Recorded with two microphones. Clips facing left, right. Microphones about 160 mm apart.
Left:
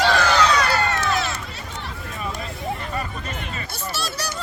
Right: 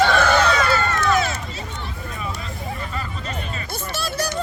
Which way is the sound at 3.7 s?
50° right (ahead or behind).